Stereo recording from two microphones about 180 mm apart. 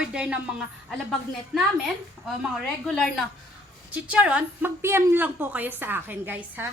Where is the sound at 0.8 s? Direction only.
Centre (ahead or behind).